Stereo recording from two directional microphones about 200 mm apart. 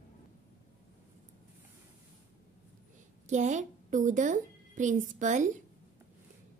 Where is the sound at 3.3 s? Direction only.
35° right (ahead or behind).